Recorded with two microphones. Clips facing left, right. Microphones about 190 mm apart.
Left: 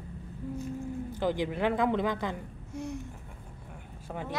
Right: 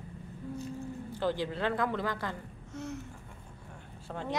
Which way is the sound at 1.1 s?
15° left (ahead or behind).